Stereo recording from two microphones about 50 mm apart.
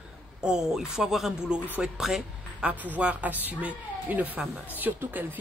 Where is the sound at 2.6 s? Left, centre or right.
Right.